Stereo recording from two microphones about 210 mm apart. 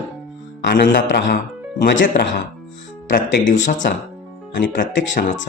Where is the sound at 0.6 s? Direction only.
55° left (ahead or behind).